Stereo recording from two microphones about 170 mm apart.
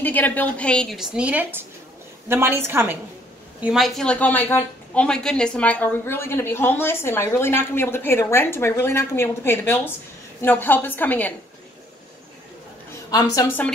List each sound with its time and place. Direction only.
0.0 s a woman's voice: 10° left (ahead or behind); by 3.0 s 15° right (ahead or behind)
3.6 s a woman's voice: centre (ahead or behind)
13.1 s a woman's voice: 20° left (ahead or behind)